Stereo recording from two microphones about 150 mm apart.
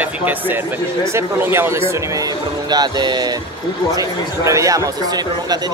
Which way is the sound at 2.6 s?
30° right (ahead or behind).